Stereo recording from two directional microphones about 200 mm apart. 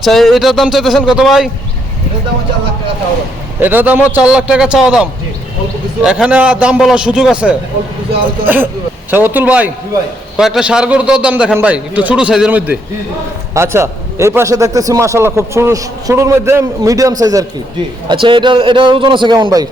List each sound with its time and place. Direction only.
0.0 s a man's voice: centre (ahead or behind)
3.6 s a man's voice: 10° right (ahead or behind)